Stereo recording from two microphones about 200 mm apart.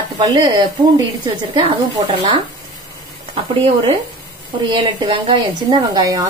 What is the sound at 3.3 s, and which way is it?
A woman's voice, 30° right (ahead or behind).